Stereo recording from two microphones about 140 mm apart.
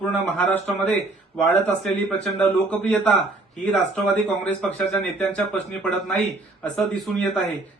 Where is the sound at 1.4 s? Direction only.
Centre (ahead or behind).